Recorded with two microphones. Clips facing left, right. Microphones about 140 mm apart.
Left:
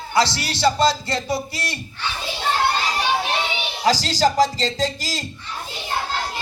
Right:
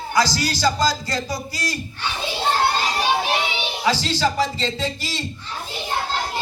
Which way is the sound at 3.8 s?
35° left (ahead or behind).